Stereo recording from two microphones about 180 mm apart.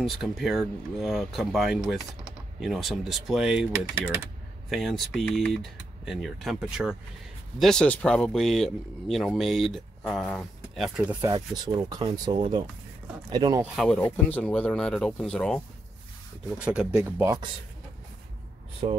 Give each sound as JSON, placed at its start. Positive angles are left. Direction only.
{"t": 0.0, "sound": "speech", "side_deg": 0}
{"t": 3.7, "sound": "speech", "side_deg": -15}
{"t": 4.6, "sound": "speech", "side_deg": 0}
{"t": 11.1, "sound": "speech", "side_deg": -20}
{"t": 13.7, "sound": "speech", "side_deg": 5}
{"t": 16.6, "sound": "speech", "side_deg": -5}
{"t": 17.0, "sound": "speech", "side_deg": -15}
{"t": 18.8, "sound": "speech", "side_deg": -35}